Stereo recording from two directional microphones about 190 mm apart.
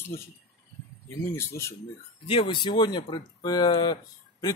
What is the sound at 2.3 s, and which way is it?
Speech, 25° left (ahead or behind).